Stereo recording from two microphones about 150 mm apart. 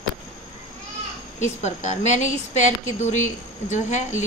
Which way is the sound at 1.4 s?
50° left (ahead or behind).